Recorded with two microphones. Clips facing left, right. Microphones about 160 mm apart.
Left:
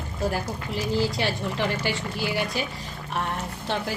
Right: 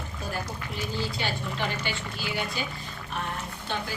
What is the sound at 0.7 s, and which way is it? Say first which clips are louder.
Speech: left 7 dB; 90° left.